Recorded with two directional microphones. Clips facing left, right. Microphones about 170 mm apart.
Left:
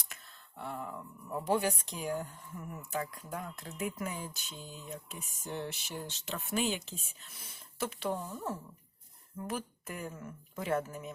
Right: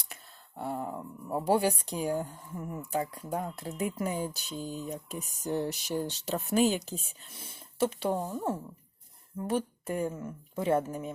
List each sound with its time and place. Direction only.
0.1 s speech: 40° right (ahead or behind)
9.5 s a woman's voice: 30° right (ahead or behind)